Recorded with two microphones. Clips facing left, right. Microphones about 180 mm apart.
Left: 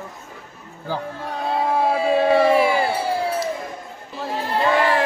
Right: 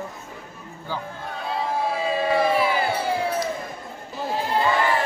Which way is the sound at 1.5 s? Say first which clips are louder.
Left 5 dB; 60° left (ahead or behind).